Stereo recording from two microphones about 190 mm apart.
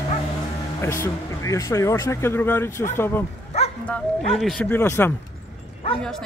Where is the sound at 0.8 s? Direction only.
15° left (ahead or behind).